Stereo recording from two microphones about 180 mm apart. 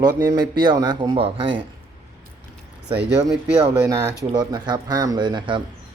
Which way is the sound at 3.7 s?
15° right (ahead or behind).